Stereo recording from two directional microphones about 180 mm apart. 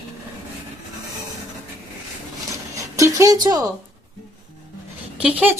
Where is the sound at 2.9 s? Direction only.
15° right (ahead or behind).